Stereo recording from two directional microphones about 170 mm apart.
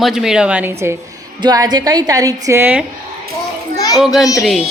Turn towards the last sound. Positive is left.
turn(degrees=0)  # may be behind; listen again after turning